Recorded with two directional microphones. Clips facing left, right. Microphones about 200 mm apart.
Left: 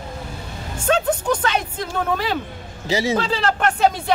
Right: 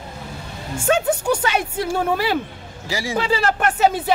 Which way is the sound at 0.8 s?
10° right (ahead or behind).